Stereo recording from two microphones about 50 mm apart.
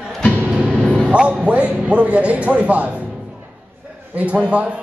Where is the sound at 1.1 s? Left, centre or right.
Right.